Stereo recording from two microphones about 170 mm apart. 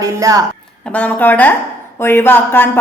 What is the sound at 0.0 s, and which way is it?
Speech, 20° right (ahead or behind).